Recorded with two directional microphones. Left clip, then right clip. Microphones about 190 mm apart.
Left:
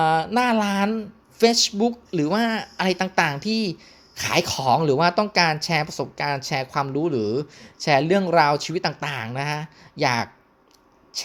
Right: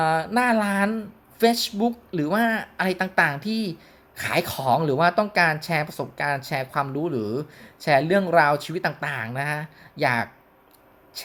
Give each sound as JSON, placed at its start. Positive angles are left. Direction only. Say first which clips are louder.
{"t": 0.0, "sound": "speech", "louder": "left 2 dB", "side_deg": 30}